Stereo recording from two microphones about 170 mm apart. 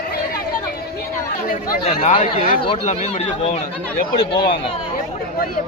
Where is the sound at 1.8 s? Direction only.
35° left (ahead or behind).